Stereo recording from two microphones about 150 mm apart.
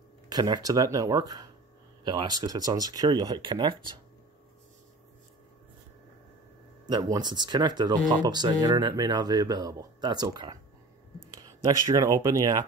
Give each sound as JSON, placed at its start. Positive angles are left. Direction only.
{"t": 0.3, "sound": "speech", "side_deg": -25}
{"t": 6.9, "sound": "speech", "side_deg": -25}